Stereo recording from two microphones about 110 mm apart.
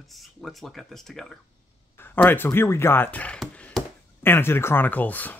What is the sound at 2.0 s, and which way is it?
Speech, 20° left (ahead or behind).